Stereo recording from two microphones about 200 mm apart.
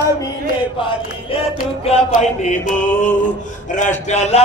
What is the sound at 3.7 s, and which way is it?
Mantra, 35° left (ahead or behind).